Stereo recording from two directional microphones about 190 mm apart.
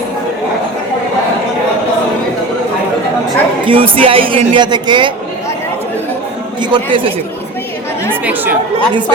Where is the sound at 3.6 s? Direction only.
30° right (ahead or behind).